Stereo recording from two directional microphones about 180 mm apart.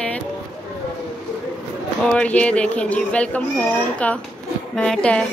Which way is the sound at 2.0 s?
5° left (ahead or behind).